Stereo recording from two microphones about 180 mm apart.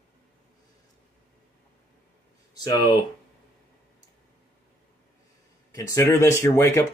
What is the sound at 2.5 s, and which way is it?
Speech, 25° left (ahead or behind).